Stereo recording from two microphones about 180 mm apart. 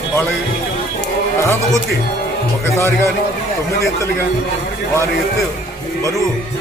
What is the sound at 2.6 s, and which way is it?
Speech, 15° left (ahead or behind).